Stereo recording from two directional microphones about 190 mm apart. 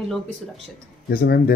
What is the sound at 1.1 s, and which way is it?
Speech, 55° left (ahead or behind).